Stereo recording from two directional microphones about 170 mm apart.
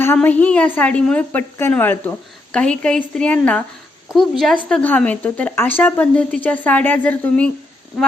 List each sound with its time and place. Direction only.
0.0 s a woman's voice: 10° left (ahead or behind)